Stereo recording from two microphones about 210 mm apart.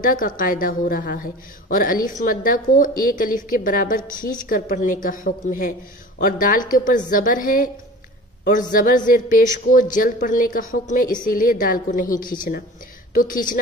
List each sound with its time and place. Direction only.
0.0 s a woman's voice: 40° left (ahead or behind)